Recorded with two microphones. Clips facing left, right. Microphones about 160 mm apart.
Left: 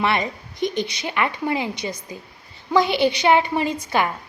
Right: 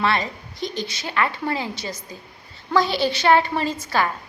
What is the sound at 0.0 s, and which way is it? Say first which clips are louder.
A woman's voice: left 1 dB; 20° left (ahead or behind).